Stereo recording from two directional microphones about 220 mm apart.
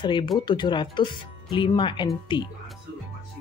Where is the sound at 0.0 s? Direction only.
20° left (ahead or behind).